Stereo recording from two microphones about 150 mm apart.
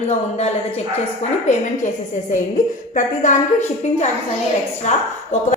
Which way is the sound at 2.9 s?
55° left (ahead or behind).